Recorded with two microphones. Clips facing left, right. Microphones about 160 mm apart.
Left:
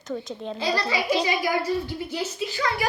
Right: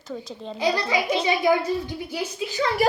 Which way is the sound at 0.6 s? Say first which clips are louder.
Right 3 dB; 15° right (ahead or behind).